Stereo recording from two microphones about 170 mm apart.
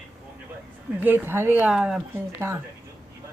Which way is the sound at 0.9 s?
10° right (ahead or behind).